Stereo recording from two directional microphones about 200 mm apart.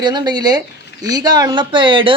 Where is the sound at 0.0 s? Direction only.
20° right (ahead or behind).